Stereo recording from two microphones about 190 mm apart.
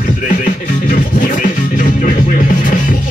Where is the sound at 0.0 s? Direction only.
45° left (ahead or behind).